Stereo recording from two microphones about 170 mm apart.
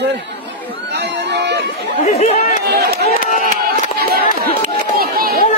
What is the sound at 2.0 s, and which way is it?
Speech, 40° left (ahead or behind).